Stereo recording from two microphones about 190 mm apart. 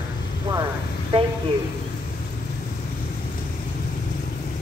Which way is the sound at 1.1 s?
30° right (ahead or behind).